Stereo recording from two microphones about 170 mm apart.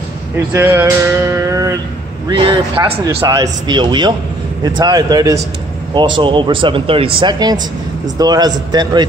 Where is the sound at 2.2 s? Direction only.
25° right (ahead or behind).